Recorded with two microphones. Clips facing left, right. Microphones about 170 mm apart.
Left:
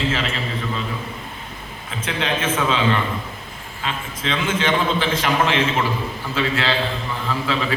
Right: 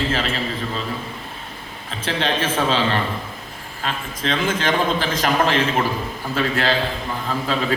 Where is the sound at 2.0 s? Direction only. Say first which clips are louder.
Right 1 dB; 35° right (ahead or behind).